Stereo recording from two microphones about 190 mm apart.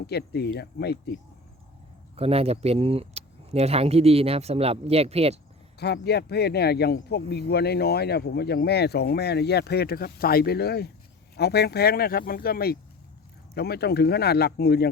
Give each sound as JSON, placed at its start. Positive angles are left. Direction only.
{"t": 0.1, "sound": "speech", "side_deg": 60}
{"t": 2.1, "sound": "speech", "side_deg": -30}
{"t": 5.8, "sound": "speech", "side_deg": 60}